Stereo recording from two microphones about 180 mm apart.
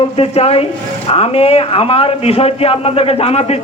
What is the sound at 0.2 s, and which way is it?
A man's voice, 35° left (ahead or behind).